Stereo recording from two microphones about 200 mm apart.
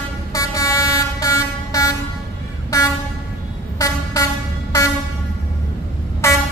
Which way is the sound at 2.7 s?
15° left (ahead or behind).